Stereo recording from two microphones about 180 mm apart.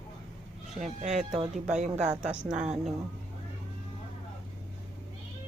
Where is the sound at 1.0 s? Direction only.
40° right (ahead or behind).